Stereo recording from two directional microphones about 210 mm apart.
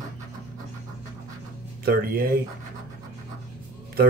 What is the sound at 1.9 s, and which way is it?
Speech, 45° right (ahead or behind).